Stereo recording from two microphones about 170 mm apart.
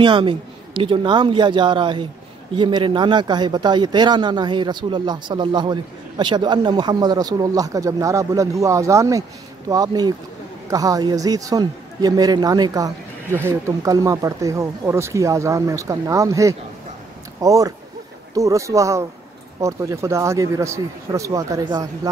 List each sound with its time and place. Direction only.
0.0 s speech: 30° right (ahead or behind)